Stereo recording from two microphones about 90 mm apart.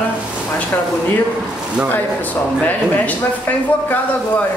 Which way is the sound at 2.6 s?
15° left (ahead or behind).